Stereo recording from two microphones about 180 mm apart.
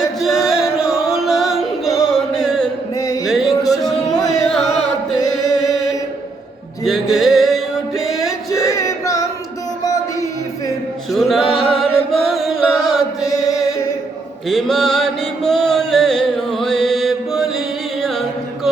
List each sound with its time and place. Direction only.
0.2 s music: centre (ahead or behind)
2.9 s music: 20° left (ahead or behind)
3.2 s music: centre (ahead or behind)
4.4 s carnatic music: centre (ahead or behind)
5.2 s music: 20° left (ahead or behind)
6.8 s music: centre (ahead or behind)
7.9 s music: 20° left (ahead or behind)
11.1 s music: centre (ahead or behind)
13.2 s chant: 20° left (ahead or behind)
14.4 s music: centre (ahead or behind)